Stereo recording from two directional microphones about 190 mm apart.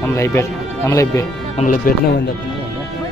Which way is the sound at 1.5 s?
45° left (ahead or behind).